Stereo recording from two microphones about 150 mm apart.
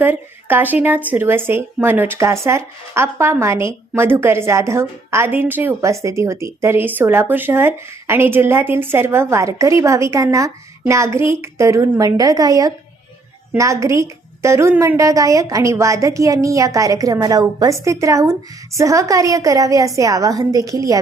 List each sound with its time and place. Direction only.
0.0 s a woman's voice: 15° right (ahead or behind)